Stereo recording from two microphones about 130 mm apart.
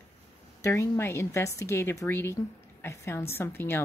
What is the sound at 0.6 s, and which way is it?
A woman's voice, 20° left (ahead or behind).